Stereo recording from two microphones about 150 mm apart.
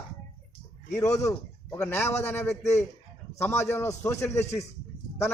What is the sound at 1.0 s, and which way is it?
A man's voice, 20° left (ahead or behind).